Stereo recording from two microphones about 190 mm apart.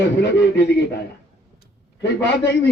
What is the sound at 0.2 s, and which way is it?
Speech, 70° left (ahead or behind).